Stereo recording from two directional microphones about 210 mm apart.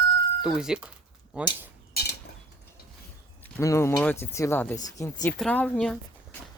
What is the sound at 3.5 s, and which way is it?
Speech, 15° left (ahead or behind).